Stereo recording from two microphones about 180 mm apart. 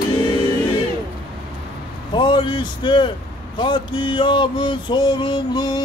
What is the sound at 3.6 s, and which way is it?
A man's voice, 25° left (ahead or behind).